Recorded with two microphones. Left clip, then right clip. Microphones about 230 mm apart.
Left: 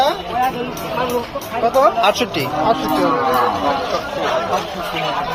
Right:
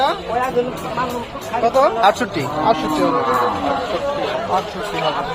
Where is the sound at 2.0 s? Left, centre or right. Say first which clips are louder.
Right 1 dB; centre.